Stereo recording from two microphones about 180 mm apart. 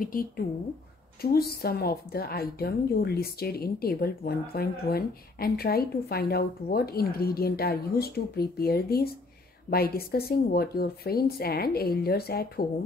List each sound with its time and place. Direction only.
0.0 s a woman's voice: 50° left (ahead or behind)